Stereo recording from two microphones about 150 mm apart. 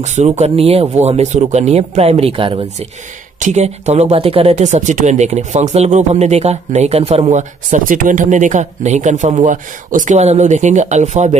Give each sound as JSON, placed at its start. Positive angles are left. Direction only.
{"t": 0.0, "sound": "speech", "side_deg": -50}
{"t": 3.3, "sound": "speech", "side_deg": -50}